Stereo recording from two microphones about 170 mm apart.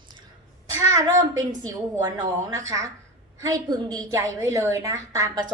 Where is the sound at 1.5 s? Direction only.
20° right (ahead or behind).